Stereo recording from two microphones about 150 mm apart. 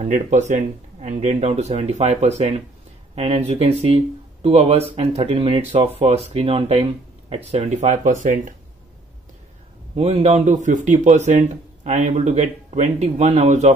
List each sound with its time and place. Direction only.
0.0 s speech: 50° right (ahead or behind)
9.9 s speech: 40° right (ahead or behind)